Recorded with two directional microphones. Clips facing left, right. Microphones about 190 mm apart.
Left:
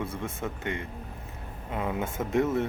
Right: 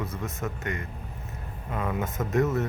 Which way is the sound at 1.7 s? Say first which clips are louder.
Even; 15° left (ahead or behind).